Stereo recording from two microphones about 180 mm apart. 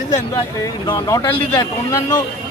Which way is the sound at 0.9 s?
20° left (ahead or behind).